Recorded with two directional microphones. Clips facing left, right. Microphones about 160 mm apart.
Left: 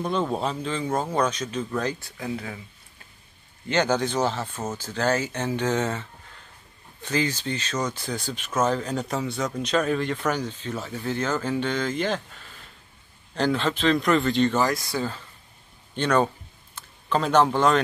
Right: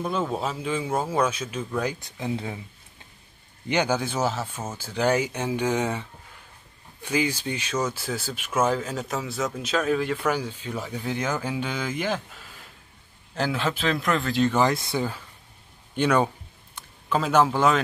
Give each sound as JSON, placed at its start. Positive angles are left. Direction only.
{"t": 0.0, "sound": "speech", "side_deg": -5}
{"t": 3.6, "sound": "speech", "side_deg": -10}
{"t": 14.6, "sound": "speech", "side_deg": -25}
{"t": 16.0, "sound": "speech", "side_deg": -10}